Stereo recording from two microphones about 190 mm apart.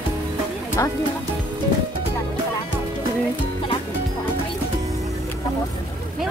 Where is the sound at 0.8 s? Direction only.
15° left (ahead or behind).